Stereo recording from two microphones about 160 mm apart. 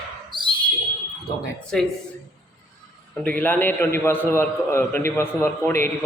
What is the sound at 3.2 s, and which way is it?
A man's voice, 10° left (ahead or behind).